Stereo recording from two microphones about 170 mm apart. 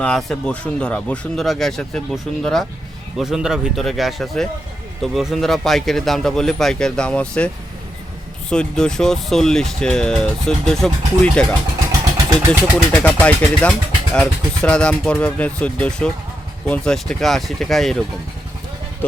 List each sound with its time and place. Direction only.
0.0 s speech: 5° left (ahead or behind)
11.9 s vehicle: 20° right (ahead or behind)
12.9 s speech: 5° left (ahead or behind)